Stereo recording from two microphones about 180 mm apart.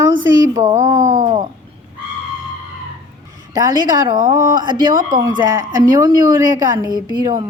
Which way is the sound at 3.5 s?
20° right (ahead or behind).